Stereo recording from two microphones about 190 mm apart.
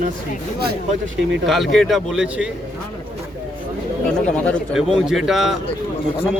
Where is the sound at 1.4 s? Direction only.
Centre (ahead or behind).